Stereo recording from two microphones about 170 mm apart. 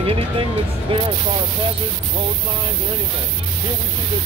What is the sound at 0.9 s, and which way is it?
Speech, 30° right (ahead or behind).